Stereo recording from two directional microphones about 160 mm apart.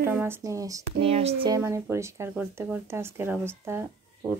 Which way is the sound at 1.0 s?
40° right (ahead or behind).